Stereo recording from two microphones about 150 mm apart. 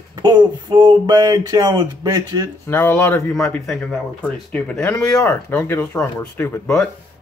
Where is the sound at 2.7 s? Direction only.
15° left (ahead or behind).